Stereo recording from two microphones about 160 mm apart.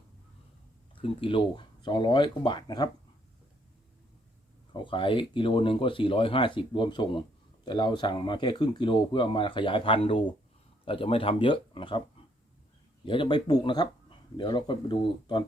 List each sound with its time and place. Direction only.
1.0 s speech: 35° left (ahead or behind)
4.7 s speech: 30° left (ahead or behind)
13.1 s speech: 30° left (ahead or behind)